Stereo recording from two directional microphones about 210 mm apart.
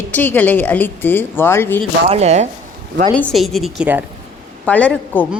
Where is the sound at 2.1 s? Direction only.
30° right (ahead or behind).